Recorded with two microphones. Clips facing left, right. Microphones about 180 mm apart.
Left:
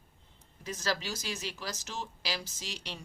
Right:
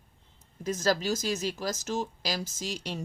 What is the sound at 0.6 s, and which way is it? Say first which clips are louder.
Speech: right 8 dB; 45° right (ahead or behind).